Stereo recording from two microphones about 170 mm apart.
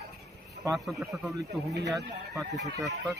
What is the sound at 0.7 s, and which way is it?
Speech, centre (ahead or behind).